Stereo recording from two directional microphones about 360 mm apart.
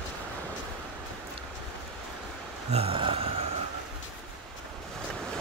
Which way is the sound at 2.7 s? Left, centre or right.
Centre.